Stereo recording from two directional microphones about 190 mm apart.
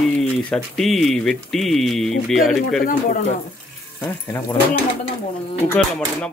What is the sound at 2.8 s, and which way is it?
Speech, 50° left (ahead or behind).